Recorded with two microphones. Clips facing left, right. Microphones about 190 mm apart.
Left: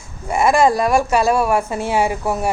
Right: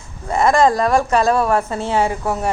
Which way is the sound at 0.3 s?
10° left (ahead or behind).